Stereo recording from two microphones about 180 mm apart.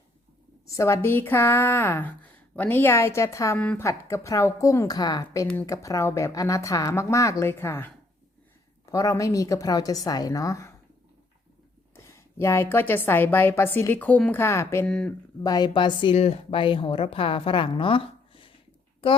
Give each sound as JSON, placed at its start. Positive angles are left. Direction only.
{"t": 0.8, "sound": "a woman's voice", "side_deg": 15}
{"t": 11.9, "sound": "speech", "side_deg": 15}
{"t": 15.4, "sound": "a woman's voice", "side_deg": 20}